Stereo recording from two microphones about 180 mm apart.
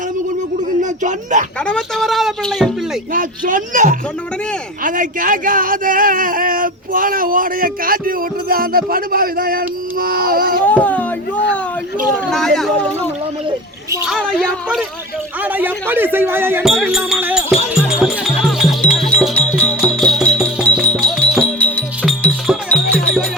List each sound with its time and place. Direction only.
0.8 s speech: 45° right (ahead or behind)
1.6 s speech: centre (ahead or behind)
3.1 s speech: 50° right (ahead or behind)
10.7 s a sound: 10° left (ahead or behind)
12.3 s speech: centre (ahead or behind)
14.0 s speech: centre (ahead or behind)
15.4 s speech: 10° right (ahead or behind)
16.8 s music: 5° right (ahead or behind)